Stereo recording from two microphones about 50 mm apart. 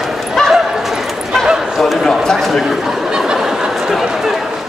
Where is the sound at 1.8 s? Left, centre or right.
Centre.